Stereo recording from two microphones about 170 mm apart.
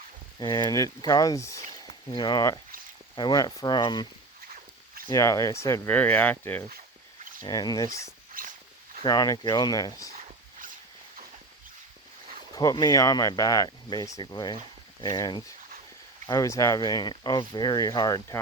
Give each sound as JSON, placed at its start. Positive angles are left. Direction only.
{"t": 0.3, "sound": "speech", "side_deg": 25}
{"t": 5.0, "sound": "speech", "side_deg": 20}
{"t": 8.4, "sound": "walk", "side_deg": -55}
{"t": 9.0, "sound": "speech", "side_deg": 20}
{"t": 12.5, "sound": "speech", "side_deg": 20}